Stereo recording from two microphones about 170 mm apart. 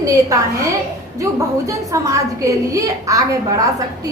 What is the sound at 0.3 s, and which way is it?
A woman's voice, 20° right (ahead or behind).